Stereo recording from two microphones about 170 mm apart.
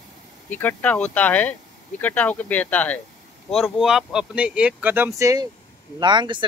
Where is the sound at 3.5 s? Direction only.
Centre (ahead or behind); by 6.5 s 25° right (ahead or behind).